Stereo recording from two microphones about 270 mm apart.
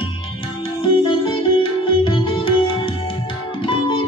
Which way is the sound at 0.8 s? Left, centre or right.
Centre.